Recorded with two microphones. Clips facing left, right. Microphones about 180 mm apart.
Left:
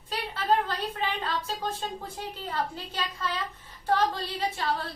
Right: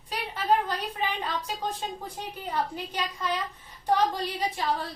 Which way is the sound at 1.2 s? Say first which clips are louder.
Even; 15° right (ahead or behind).